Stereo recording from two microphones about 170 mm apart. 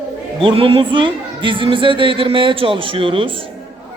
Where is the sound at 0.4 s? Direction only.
30° right (ahead or behind).